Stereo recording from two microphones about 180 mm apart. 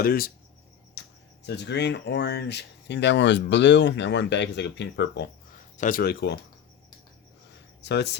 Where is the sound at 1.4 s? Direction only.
70° left (ahead or behind).